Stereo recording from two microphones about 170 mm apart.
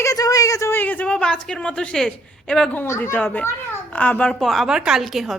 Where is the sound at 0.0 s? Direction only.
20° left (ahead or behind).